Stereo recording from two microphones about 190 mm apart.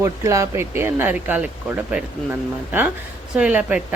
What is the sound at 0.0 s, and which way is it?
Speech, 15° right (ahead or behind).